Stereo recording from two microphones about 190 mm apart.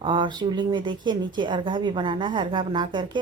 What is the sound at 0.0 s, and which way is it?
Speech, 25° right (ahead or behind).